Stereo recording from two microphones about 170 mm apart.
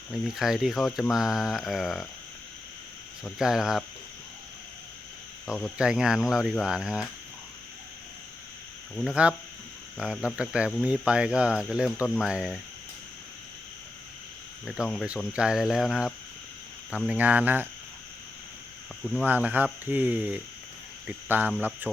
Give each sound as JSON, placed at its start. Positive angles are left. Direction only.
{"t": 0.1, "sound": "speech", "side_deg": 0}
{"t": 3.2, "sound": "speech", "side_deg": 0}
{"t": 5.7, "sound": "speech", "side_deg": -5}
{"t": 9.0, "sound": "speech", "side_deg": -5}
{"t": 14.7, "sound": "speech", "side_deg": 0}
{"t": 19.2, "sound": "speech", "side_deg": -10}